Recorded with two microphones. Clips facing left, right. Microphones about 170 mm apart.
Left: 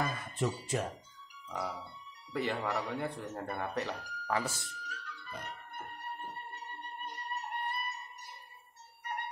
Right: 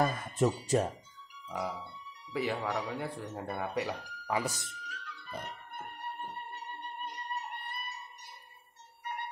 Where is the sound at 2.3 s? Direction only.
Centre (ahead or behind).